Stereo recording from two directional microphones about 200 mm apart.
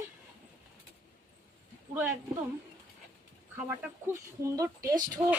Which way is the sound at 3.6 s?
10° right (ahead or behind).